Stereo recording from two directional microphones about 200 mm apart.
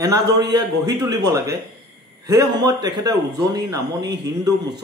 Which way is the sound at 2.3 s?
20° right (ahead or behind).